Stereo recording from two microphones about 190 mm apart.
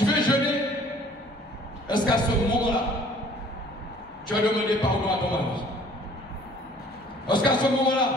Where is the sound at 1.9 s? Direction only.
25° left (ahead or behind).